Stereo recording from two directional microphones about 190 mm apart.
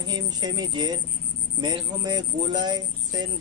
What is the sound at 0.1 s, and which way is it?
Speech, 20° right (ahead or behind).